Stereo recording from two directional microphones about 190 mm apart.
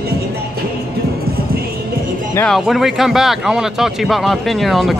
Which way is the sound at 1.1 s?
55° right (ahead or behind).